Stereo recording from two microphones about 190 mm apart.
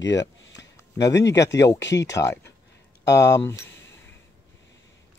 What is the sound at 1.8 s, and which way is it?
Speech, 70° left (ahead or behind).